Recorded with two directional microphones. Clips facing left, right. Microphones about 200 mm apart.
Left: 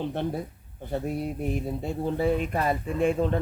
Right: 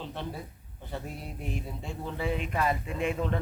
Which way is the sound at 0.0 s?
55° left (ahead or behind).